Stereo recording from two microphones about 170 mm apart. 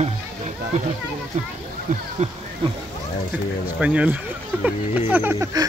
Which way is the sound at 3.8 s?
5° right (ahead or behind).